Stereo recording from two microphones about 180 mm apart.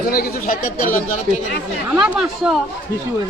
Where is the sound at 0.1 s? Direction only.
55° left (ahead or behind).